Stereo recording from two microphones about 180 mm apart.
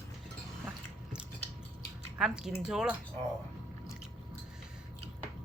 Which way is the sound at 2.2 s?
Centre (ahead or behind).